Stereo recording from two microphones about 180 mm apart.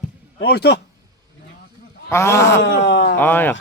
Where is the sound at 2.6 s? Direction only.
85° left.